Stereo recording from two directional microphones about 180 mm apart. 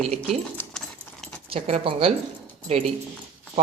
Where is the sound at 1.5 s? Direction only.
35° right (ahead or behind).